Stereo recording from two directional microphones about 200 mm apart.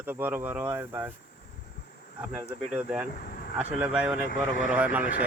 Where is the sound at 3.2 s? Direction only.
50° left (ahead or behind).